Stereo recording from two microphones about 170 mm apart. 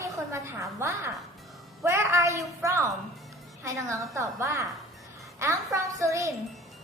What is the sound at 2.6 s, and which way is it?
A woman's voice, 15° right (ahead or behind).